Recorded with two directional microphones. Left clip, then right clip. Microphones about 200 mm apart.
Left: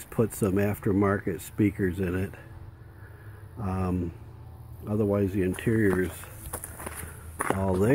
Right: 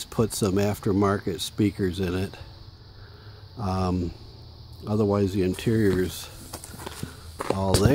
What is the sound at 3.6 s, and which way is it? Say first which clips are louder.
Speech: right 4 dB; 25° right (ahead or behind).